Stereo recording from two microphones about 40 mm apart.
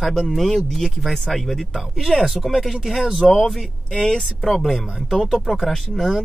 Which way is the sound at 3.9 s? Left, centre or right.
Centre.